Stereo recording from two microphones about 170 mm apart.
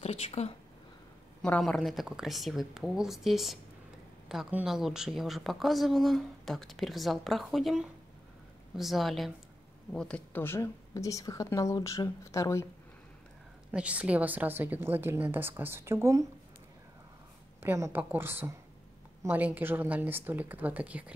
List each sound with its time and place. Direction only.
0.0 s speech: 35° left (ahead or behind)
1.4 s speech: 5° left (ahead or behind)
13.7 s a woman's voice: 5° right (ahead or behind)
17.6 s a woman's voice: 15° right (ahead or behind)